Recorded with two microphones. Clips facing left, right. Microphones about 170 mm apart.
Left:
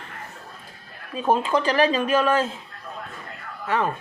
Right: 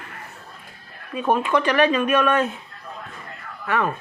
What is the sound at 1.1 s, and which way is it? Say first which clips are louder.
Speech: right 1 dB; 30° left (ahead or behind).